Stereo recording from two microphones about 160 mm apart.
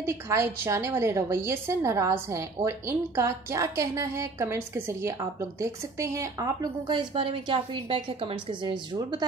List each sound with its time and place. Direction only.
0.0 s a woman's voice: 15° right (ahead or behind); by 9.2 s 30° right (ahead or behind)